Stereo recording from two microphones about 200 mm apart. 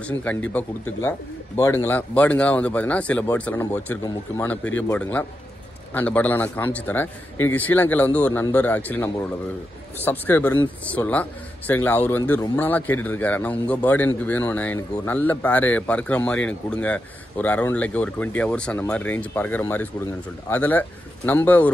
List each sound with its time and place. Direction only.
0.2 s speech: 10° left (ahead or behind)
4.0 s speech: 20° left (ahead or behind)
4.5 s speech: 10° left (ahead or behind)
8.3 s speech: 20° left (ahead or behind)